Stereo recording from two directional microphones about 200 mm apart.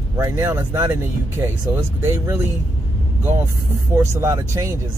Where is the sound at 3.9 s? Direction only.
15° right (ahead or behind).